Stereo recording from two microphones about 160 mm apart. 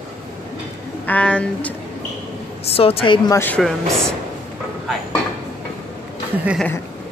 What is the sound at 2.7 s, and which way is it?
Speech, 35° left (ahead or behind).